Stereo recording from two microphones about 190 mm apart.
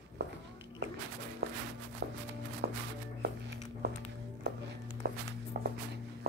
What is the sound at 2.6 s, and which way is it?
Music, 55° right (ahead or behind).